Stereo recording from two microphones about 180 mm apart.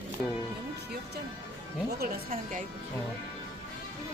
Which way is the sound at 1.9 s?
50° right (ahead or behind).